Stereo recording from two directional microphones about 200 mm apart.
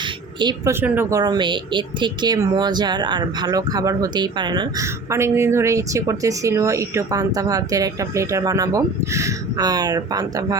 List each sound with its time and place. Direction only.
0.3 s speech: 20° right (ahead or behind)